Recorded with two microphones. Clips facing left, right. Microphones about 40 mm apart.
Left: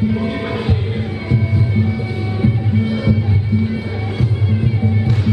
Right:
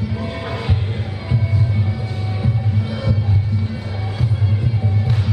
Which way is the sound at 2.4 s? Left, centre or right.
Centre.